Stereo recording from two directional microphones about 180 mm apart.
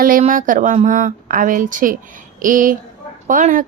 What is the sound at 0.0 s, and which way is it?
A woman's voice, 50° right (ahead or behind).